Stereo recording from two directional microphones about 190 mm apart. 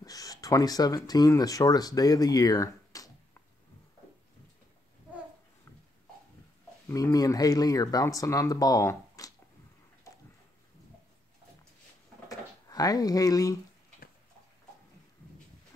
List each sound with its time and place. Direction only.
0.0 s speech: 20° left (ahead or behind)
6.9 s speech: 15° left (ahead or behind)
12.3 s a sound: 20° left (ahead or behind)